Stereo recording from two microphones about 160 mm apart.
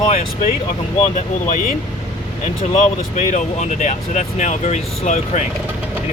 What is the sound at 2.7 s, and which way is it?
Speech, 50° left (ahead or behind).